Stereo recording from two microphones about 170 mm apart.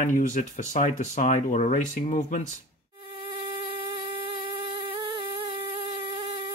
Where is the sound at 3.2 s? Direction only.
30° right (ahead or behind).